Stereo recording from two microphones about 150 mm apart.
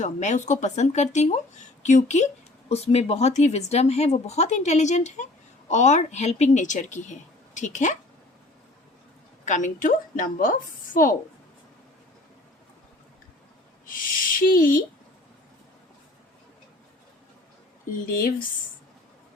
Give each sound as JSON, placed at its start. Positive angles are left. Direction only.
{"t": 0.0, "sound": "speech", "side_deg": 55}
{"t": 9.4, "sound": "a woman's voice", "side_deg": 55}
{"t": 13.8, "sound": "speech", "side_deg": 65}